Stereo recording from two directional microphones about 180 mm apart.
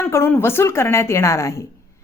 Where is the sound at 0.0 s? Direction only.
15° left (ahead or behind).